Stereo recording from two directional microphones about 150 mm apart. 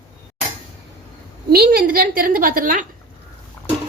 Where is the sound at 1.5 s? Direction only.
85° right; by 2.8 s 70° right (ahead or behind).